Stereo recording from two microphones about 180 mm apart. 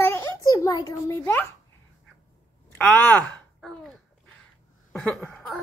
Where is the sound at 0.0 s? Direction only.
15° left (ahead or behind).